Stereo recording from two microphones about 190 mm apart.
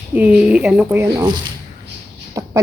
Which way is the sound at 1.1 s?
20° right (ahead or behind).